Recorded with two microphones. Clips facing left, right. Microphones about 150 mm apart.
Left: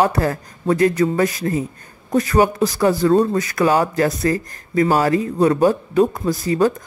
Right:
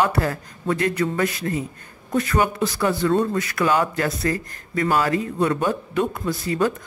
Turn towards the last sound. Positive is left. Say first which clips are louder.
# left 5 dB
turn(degrees=40)  # may be behind; listen again after turning